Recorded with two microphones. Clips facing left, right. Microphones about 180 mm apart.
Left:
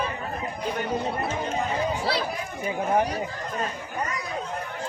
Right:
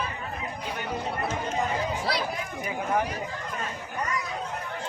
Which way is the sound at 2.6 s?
35° left (ahead or behind).